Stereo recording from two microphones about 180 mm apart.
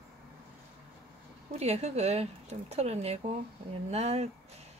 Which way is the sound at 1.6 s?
35° right (ahead or behind).